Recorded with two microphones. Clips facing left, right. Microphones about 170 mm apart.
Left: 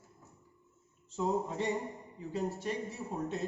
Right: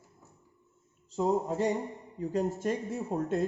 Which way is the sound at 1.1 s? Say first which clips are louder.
Right 4 dB; 40° right (ahead or behind).